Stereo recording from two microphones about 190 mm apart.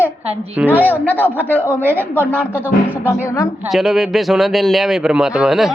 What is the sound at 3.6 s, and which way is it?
A man's voice, centre (ahead or behind).